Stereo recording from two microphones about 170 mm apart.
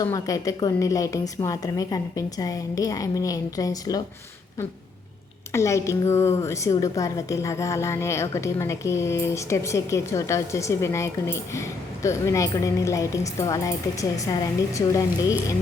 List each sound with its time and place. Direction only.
0.0 s a woman's voice: 20° left (ahead or behind)
5.5 s a woman's voice: 15° left (ahead or behind)